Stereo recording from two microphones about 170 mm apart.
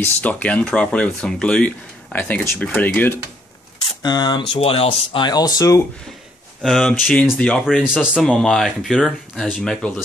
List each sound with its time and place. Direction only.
0.0 s speech: 10° left (ahead or behind)
4.0 s speech: 25° left (ahead or behind)
6.6 s speech: 5° left (ahead or behind)